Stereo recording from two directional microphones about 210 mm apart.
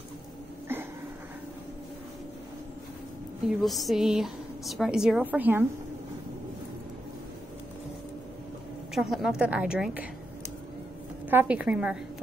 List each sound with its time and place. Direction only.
0.7 s a sound: 10° right (ahead or behind)
3.4 s a woman's voice: centre (ahead or behind)
8.9 s a woman's voice: centre (ahead or behind)
11.2 s a woman's voice: 10° right (ahead or behind)